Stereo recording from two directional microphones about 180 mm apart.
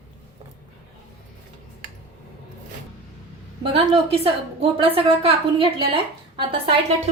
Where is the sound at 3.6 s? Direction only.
30° right (ahead or behind).